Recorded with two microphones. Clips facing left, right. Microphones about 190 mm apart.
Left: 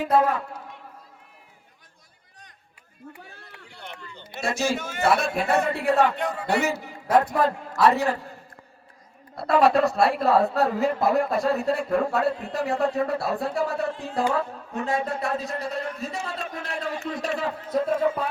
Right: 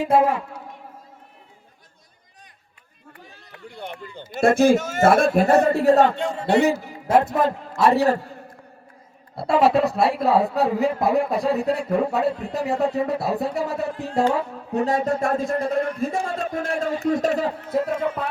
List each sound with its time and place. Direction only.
0.0 s music: 25° right (ahead or behind)
3.7 s a sound: 55° right (ahead or behind)
4.4 s a man's voice: 55° right (ahead or behind); by 7.5 s 25° right (ahead or behind)
7.8 s music: 25° right (ahead or behind)
9.3 s speech: 25° right (ahead or behind)
12.3 s speech: centre (ahead or behind)
13.1 s music: 20° right (ahead or behind)
14.7 s a man's voice: 40° right (ahead or behind)
17.7 s speech: 5° right (ahead or behind)